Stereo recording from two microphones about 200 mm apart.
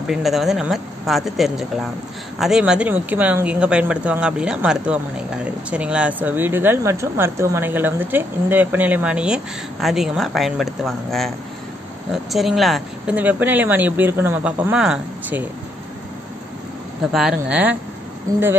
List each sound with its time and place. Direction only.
0.0 s speech: centre (ahead or behind)
17.1 s speech: 5° right (ahead or behind)